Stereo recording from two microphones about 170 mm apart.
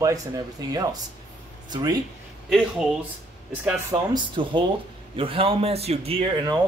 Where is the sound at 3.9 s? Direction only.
30° right (ahead or behind).